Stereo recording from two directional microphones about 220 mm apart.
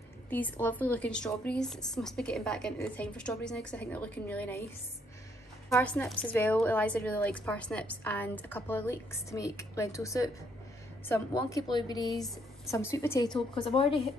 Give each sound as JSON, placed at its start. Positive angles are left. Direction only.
{"t": 0.3, "sound": "a woman's voice", "side_deg": 10}
{"t": 5.7, "sound": "a woman's voice", "side_deg": 10}
{"t": 12.1, "sound": "speech", "side_deg": 0}
{"t": 12.9, "sound": "speech", "side_deg": 15}